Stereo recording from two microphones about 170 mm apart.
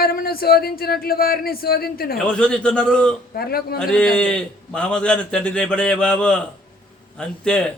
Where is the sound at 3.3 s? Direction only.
65° left (ahead or behind).